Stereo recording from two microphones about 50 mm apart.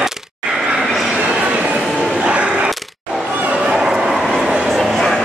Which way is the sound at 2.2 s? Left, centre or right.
Right.